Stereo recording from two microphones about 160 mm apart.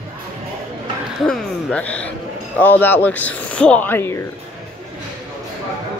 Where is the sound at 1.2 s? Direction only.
5° left (ahead or behind).